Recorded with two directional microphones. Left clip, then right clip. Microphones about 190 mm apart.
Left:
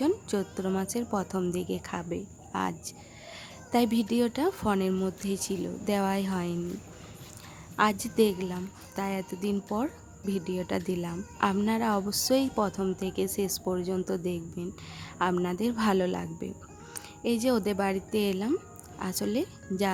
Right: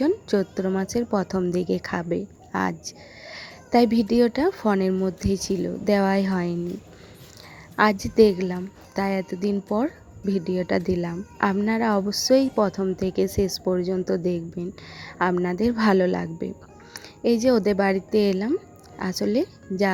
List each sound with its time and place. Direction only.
0.0 s a woman's voice: 20° right (ahead or behind)
7.8 s a woman's voice: 20° right (ahead or behind)